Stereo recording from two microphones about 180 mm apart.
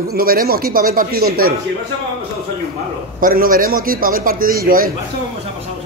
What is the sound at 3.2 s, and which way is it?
Speech, 50° right (ahead or behind).